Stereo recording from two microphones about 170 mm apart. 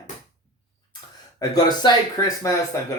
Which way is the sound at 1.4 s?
25° left (ahead or behind).